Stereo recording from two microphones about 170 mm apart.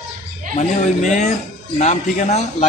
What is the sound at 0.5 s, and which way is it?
Speech, 45° left (ahead or behind).